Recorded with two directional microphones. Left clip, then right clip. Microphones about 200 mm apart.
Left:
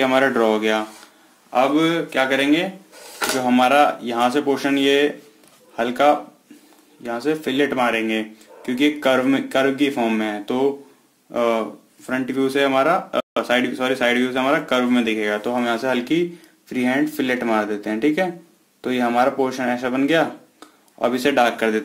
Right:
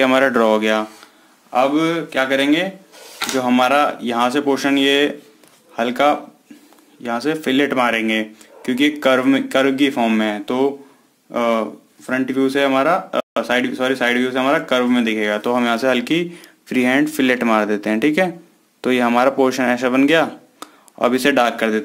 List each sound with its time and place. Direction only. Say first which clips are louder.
0.0 s speech: right 3 dB; 30° right (ahead or behind)
1.5 s speech: right 1 dB; 10° right (ahead or behind)